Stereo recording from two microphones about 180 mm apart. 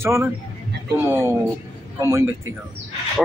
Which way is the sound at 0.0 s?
15° right (ahead or behind).